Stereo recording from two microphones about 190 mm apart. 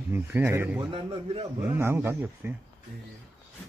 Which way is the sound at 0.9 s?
30° right (ahead or behind).